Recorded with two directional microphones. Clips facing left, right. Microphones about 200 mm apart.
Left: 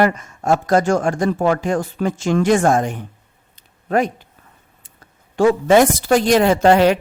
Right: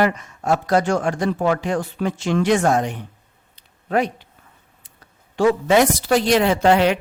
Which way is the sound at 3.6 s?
45° left (ahead or behind).